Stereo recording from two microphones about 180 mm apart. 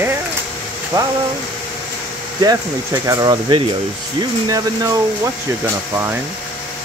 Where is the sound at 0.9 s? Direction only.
25° right (ahead or behind).